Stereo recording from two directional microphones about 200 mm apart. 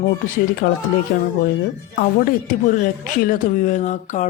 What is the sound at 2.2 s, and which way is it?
Speech, 45° left (ahead or behind).